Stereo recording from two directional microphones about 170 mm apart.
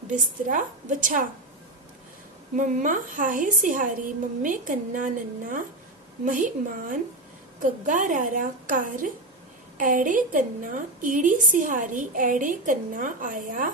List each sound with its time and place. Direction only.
0.1 s a woman's voice: 50° right (ahead or behind)
2.5 s a woman's voice: 50° right (ahead or behind)